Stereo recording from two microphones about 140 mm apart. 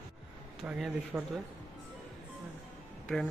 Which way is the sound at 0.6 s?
5° right (ahead or behind).